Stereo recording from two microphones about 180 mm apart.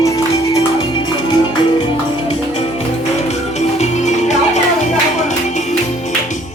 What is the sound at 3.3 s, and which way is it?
Music, 40° left (ahead or behind).